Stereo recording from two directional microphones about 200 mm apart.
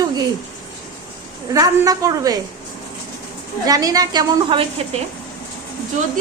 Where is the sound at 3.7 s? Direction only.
20° right (ahead or behind).